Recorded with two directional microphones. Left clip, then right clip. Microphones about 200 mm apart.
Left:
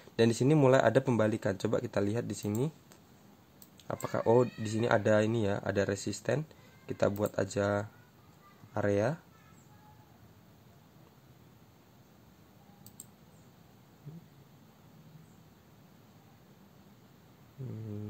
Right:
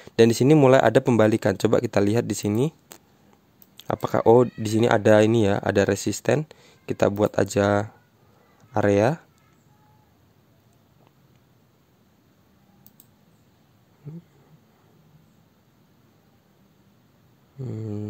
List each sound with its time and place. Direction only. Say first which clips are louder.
0.0 s speech: right 10 dB; 50° right (ahead or behind)